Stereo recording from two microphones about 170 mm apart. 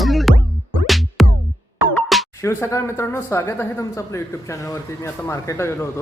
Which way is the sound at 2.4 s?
15° left (ahead or behind).